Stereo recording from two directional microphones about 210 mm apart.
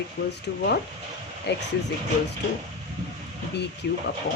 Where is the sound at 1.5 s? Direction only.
55° left (ahead or behind).